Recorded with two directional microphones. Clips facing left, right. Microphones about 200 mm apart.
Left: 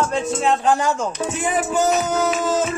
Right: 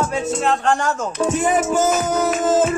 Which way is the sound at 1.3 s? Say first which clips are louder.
Right 6 dB; 45° right (ahead or behind).